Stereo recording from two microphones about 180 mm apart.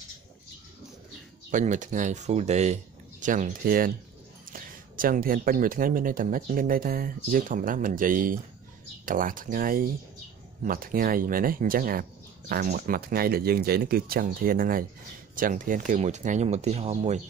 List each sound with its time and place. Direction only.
1.5 s speech: 45° right (ahead or behind)